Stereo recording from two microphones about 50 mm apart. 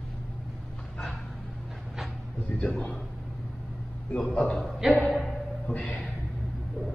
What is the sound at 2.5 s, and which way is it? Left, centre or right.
Speech, left.